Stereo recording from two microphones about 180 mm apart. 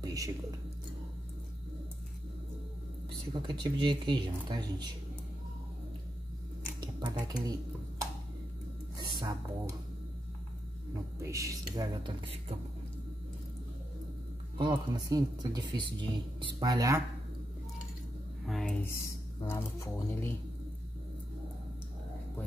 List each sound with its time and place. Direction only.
0.0 s whispering: 20° right (ahead or behind)
3.6 s a man's voice: 25° right (ahead or behind)
7.0 s a man's voice: 20° right (ahead or behind)
8.9 s speech: 20° right (ahead or behind)
11.2 s a man's voice: 15° right (ahead or behind)
14.6 s a man's voice: 25° right (ahead or behind)
18.4 s speech: centre (ahead or behind)
19.4 s speech: 15° left (ahead or behind)